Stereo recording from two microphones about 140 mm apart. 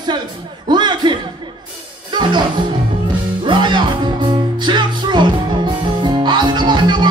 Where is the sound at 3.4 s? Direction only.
35° right (ahead or behind).